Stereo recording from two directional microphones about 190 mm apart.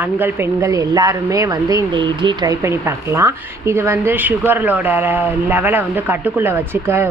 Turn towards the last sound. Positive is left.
turn(degrees=-10)  # may be behind; listen again after turning